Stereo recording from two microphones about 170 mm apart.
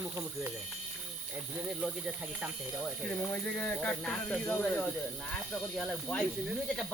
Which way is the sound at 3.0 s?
5° left (ahead or behind).